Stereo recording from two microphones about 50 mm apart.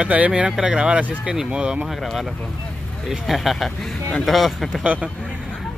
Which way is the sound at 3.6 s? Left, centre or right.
Centre.